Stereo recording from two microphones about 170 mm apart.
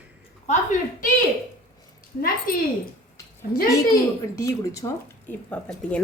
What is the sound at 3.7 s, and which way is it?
A woman's voice, 20° left (ahead or behind).